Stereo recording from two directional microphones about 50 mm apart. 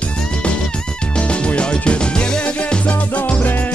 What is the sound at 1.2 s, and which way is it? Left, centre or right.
Music, left.